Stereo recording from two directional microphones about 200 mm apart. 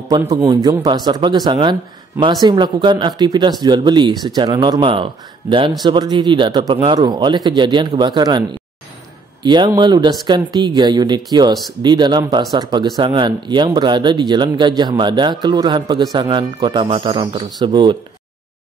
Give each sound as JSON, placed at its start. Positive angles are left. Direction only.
{"t": 0.1, "sound": "speech", "side_deg": -15}